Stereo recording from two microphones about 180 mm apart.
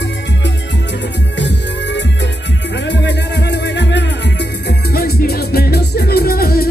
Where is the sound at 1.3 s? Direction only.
75° left (ahead or behind).